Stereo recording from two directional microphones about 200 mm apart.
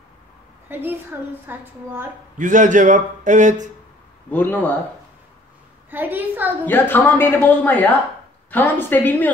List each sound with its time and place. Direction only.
0.7 s a woman's voice: 10° right (ahead or behind)
2.3 s a man's voice: 40° right (ahead or behind)
4.3 s a woman's voice: 10° left (ahead or behind)
5.9 s a woman's voice: 10° right (ahead or behind)
6.6 s a woman's voice: 10° left (ahead or behind)